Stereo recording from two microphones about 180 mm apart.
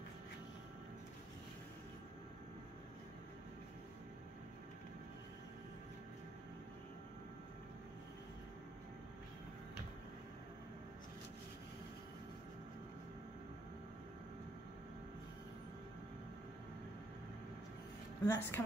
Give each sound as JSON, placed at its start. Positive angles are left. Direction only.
{"t": 18.2, "sound": "speech", "side_deg": 15}